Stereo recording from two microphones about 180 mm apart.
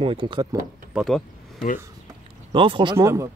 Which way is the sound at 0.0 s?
30° right (ahead or behind).